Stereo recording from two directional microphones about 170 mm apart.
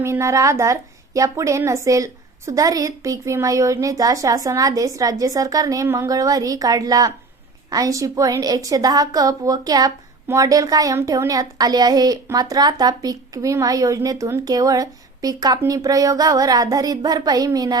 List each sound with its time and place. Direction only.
0.0 s a woman's voice: 15° right (ahead or behind)